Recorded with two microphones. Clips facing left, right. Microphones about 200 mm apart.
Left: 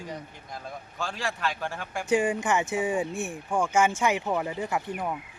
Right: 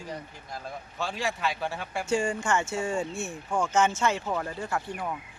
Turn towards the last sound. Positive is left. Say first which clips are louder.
# left 2 dB
turn(degrees=15)  # may be behind; listen again after turning